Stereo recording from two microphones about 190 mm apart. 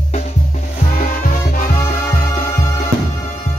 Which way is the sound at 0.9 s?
45° left (ahead or behind).